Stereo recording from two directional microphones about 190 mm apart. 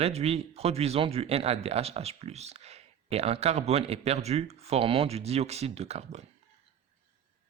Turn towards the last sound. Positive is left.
turn(degrees=-35)  # may be behind; listen again after turning